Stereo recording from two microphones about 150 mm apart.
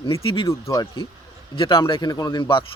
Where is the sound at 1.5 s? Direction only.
35° left (ahead or behind).